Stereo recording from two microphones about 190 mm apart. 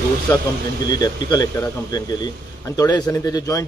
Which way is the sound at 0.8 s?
20° left (ahead or behind).